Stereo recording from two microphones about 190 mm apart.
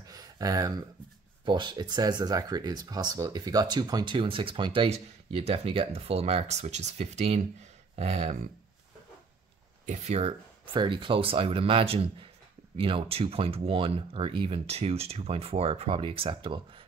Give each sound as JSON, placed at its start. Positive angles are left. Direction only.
{"t": 0.0, "sound": "a sound", "side_deg": -20}
{"t": 1.4, "sound": "speech", "side_deg": -25}
{"t": 9.8, "sound": "speech", "side_deg": -35}